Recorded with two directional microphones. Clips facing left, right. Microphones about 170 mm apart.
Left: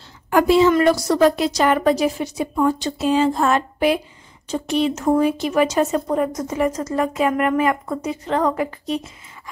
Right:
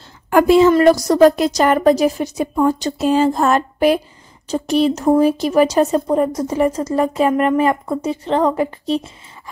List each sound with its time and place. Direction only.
0.3 s a woman's voice: 50° right (ahead or behind); by 9.1 s 30° right (ahead or behind)